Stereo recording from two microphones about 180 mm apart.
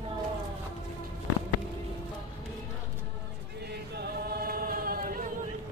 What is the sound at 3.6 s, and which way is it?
Music, 65° right (ahead or behind).